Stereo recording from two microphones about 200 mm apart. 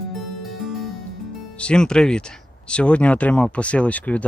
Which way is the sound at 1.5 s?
5° left (ahead or behind).